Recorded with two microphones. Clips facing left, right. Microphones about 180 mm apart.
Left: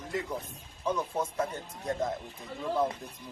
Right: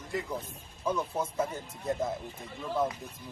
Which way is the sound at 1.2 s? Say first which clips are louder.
Left 1 dB; 10° right (ahead or behind).